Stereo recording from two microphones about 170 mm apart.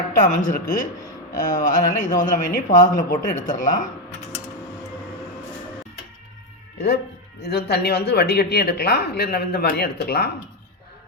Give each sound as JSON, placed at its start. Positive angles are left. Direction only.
{"t": 0.2, "sound": "speech", "side_deg": 45}
{"t": 6.7, "sound": "speech", "side_deg": 75}